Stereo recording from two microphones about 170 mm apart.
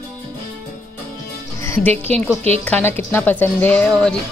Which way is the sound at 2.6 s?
10° left (ahead or behind).